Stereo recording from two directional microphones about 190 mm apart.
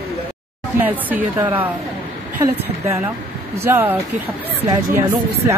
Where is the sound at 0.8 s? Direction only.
10° right (ahead or behind).